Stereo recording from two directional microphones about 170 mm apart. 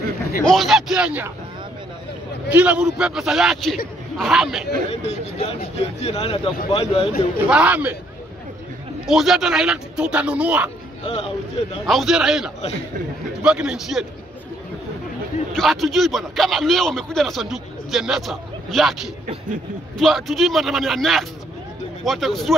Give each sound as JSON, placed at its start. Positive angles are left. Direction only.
{"t": 0.4, "sound": "a man's voice", "side_deg": 0}
{"t": 2.5, "sound": "a man's voice", "side_deg": -5}
{"t": 5.0, "sound": "speech", "side_deg": 35}
{"t": 7.4, "sound": "a man's voice", "side_deg": -5}
{"t": 9.0, "sound": "a man's voice", "side_deg": 0}
{"t": 11.1, "sound": "speech", "side_deg": 35}
{"t": 11.8, "sound": "a man's voice", "side_deg": 0}
{"t": 15.5, "sound": "a man's voice", "side_deg": 0}
{"t": 20.0, "sound": "a man's voice", "side_deg": 0}